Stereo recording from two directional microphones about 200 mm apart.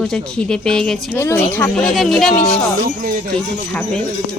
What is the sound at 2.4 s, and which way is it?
Speech, 30° left (ahead or behind).